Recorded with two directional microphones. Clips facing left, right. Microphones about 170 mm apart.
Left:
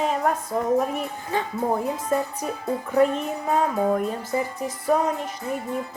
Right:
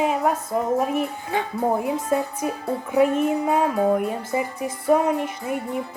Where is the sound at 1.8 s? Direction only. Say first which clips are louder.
Right 2 dB; 10° right (ahead or behind).